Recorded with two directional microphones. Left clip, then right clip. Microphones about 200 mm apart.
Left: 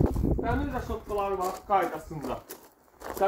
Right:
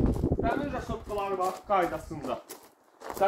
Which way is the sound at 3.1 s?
25° left (ahead or behind).